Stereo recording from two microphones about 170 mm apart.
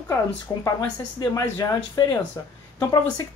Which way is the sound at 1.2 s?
20° left (ahead or behind).